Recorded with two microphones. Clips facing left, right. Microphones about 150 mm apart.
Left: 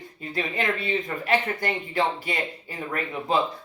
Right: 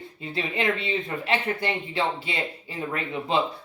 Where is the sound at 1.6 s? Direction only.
45° left (ahead or behind).